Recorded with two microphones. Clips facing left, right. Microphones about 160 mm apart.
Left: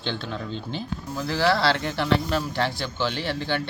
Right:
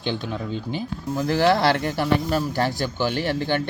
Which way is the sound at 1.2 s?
50° right (ahead or behind).